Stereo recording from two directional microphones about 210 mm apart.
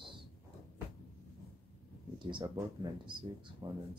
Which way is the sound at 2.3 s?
20° right (ahead or behind).